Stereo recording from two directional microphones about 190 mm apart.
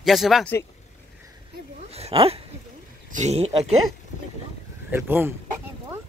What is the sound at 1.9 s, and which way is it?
Speech, 30° right (ahead or behind).